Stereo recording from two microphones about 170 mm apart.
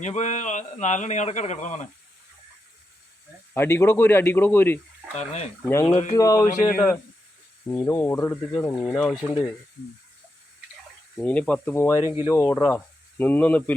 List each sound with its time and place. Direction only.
0.0 s a man's voice: 45° left (ahead or behind)
3.5 s speech: 15° left (ahead or behind)
5.1 s speech: 40° left (ahead or behind)
5.6 s speech: 15° left (ahead or behind)
5.9 s speech: 40° left (ahead or behind)
6.1 s speech: 20° left (ahead or behind)
8.8 s speech: 5° left (ahead or behind)
11.2 s speech: 10° left (ahead or behind)